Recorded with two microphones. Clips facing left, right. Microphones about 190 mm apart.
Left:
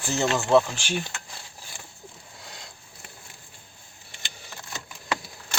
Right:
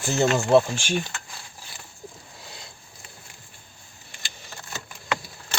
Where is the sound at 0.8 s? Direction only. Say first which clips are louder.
Right 3 dB; 15° left (ahead or behind).